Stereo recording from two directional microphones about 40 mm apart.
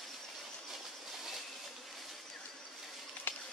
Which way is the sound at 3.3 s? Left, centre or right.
Left.